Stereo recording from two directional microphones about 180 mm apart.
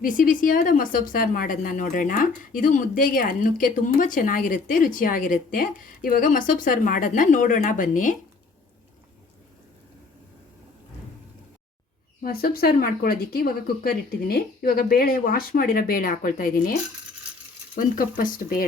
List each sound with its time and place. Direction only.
0.0 s a woman's voice: 50° left (ahead or behind)
12.2 s speech: 55° left (ahead or behind)
17.7 s a woman's voice: 50° left (ahead or behind)